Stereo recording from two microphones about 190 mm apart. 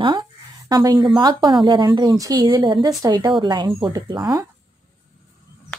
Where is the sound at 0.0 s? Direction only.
25° right (ahead or behind).